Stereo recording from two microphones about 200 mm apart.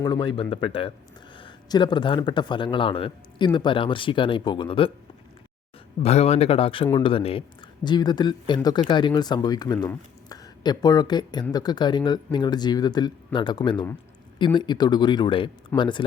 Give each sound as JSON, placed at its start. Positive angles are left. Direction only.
{"t": 0.0, "sound": "a man's voice", "side_deg": 20}
{"t": 6.0, "sound": "a man's voice", "side_deg": 30}